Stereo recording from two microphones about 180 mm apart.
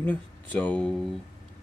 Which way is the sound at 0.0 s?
10° left (ahead or behind).